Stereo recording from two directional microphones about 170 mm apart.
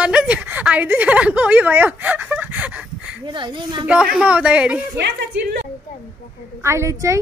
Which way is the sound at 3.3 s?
25° right (ahead or behind).